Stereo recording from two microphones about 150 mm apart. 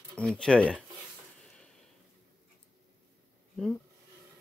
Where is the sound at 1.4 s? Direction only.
5° left (ahead or behind).